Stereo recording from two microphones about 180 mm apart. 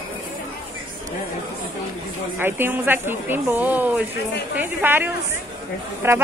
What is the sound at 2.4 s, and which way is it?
A woman's voice, 10° right (ahead or behind).